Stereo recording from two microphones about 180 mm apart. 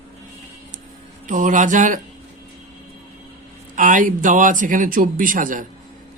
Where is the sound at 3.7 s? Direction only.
45° right (ahead or behind).